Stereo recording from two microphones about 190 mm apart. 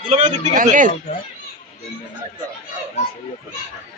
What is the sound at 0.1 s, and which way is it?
Speech, 40° right (ahead or behind).